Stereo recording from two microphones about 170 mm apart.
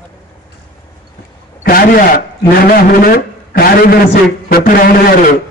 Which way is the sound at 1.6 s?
60° left (ahead or behind).